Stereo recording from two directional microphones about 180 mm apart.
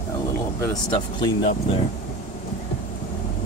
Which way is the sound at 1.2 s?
30° left (ahead or behind).